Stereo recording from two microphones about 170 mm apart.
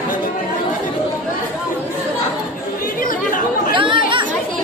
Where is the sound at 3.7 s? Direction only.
30° right (ahead or behind).